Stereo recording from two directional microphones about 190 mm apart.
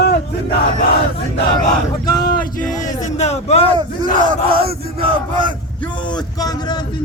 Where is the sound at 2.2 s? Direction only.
50° left (ahead or behind).